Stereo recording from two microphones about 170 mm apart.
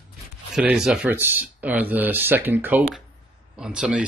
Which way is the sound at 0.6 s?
5° right (ahead or behind).